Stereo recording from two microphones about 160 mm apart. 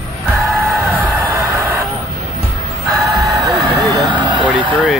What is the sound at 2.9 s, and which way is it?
Music, 20° right (ahead or behind).